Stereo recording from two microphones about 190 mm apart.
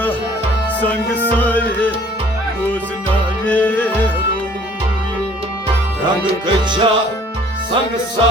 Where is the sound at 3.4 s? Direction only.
10° left (ahead or behind).